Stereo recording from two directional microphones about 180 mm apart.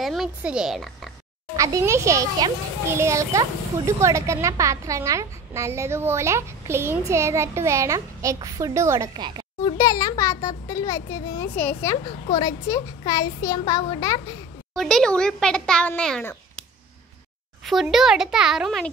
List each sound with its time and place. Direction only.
0.0 s speech: centre (ahead or behind)
1.6 s a child's voice: 15° right (ahead or behind)
9.1 s a woman's voice: 25° right (ahead or behind)
9.6 s a child's voice: 20° left (ahead or behind)
14.7 s speech: centre (ahead or behind)
17.6 s speech: centre (ahead or behind)